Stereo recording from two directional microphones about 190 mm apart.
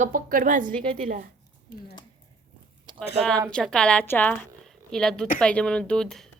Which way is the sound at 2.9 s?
25° right (ahead or behind).